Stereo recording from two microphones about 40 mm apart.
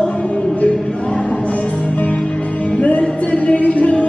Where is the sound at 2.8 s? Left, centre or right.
Left.